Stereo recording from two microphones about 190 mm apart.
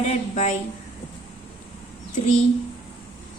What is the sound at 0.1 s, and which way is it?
Speech, 40° left (ahead or behind).